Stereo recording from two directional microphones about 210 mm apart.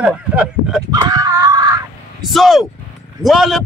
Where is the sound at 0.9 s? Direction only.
20° right (ahead or behind).